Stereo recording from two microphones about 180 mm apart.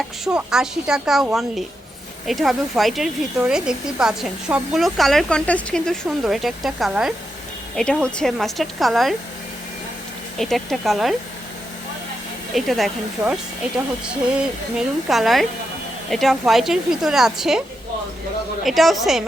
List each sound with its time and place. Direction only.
0.3 s speech: 5° right (ahead or behind)
10.3 s speech: centre (ahead or behind)
12.5 s speech: centre (ahead or behind)
18.6 s speech: centre (ahead or behind)